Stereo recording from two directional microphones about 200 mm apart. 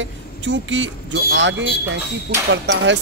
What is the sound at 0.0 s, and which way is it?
Speech, 65° right (ahead or behind).